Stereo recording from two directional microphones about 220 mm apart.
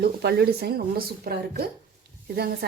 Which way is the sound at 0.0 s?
45° right (ahead or behind).